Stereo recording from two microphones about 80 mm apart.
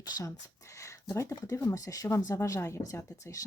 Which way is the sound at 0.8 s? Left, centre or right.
Left.